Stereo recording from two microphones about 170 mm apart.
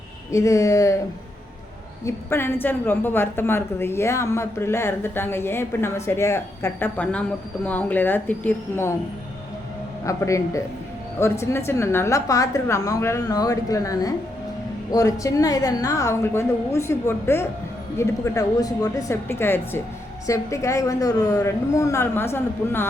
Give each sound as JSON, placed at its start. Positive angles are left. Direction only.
{"t": 0.3, "sound": "a woman's voice", "side_deg": 20}
{"t": 2.0, "sound": "a woman's voice", "side_deg": 15}
{"t": 10.1, "sound": "a woman's voice", "side_deg": 20}